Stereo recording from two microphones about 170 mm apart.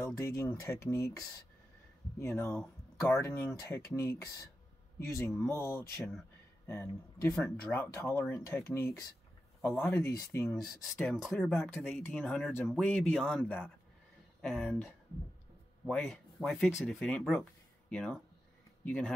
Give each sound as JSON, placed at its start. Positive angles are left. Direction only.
{"t": 0.0, "sound": "speech", "side_deg": 15}
{"t": 2.1, "sound": "a man's voice", "side_deg": 15}
{"t": 10.5, "sound": "speech", "side_deg": 0}
{"t": 16.0, "sound": "speech", "side_deg": 0}